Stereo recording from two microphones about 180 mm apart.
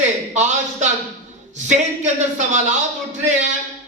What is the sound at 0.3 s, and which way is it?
A man's voice, 40° right (ahead or behind).